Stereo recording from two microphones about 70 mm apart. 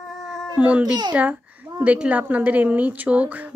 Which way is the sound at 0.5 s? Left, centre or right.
Right.